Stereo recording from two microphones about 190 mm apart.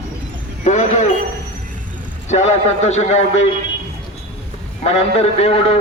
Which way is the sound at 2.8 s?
35° left (ahead or behind).